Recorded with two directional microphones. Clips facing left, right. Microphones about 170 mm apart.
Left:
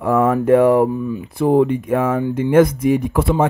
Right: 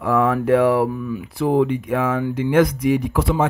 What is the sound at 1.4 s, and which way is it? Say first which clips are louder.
Speech: left 3 dB; 45° left (ahead or behind).